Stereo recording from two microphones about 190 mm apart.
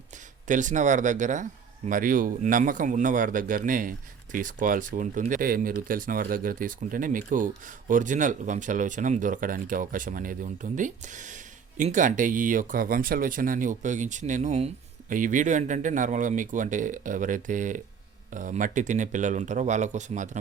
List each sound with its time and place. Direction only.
0.4 s speech: 40° right (ahead or behind)